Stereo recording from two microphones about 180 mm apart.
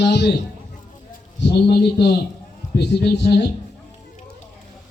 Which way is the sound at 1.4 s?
65° left (ahead or behind).